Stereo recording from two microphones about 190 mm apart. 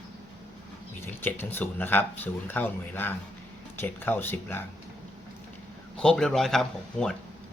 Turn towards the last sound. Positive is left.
turn(degrees=0)  # may be behind; listen again after turning